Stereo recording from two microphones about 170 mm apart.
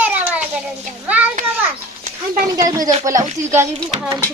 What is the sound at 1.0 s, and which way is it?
Speech, 10° right (ahead or behind).